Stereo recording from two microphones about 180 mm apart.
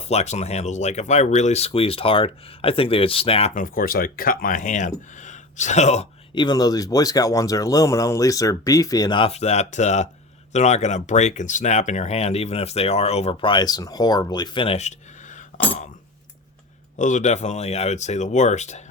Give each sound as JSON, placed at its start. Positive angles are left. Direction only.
{"t": 0.0, "sound": "speech", "side_deg": 35}
{"t": 6.3, "sound": "speech", "side_deg": 25}
{"t": 17.0, "sound": "speech", "side_deg": 45}